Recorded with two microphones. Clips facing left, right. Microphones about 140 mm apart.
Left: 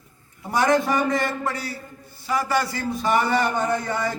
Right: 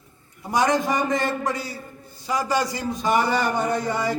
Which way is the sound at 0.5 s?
20° right (ahead or behind).